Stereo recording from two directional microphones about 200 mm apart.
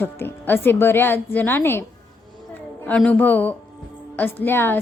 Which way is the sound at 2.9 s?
5° left (ahead or behind).